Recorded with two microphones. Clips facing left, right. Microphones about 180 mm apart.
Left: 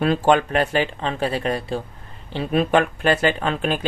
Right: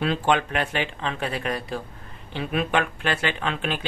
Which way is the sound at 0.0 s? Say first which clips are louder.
Left 5 dB; 45° left (ahead or behind).